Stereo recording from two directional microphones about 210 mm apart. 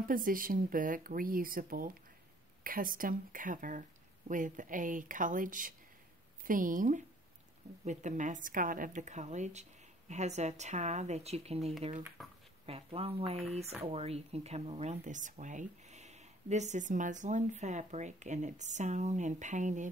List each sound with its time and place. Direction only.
0.1 s speech: 40° right (ahead or behind)
12.2 s speech: centre (ahead or behind)
12.6 s speech: 30° right (ahead or behind)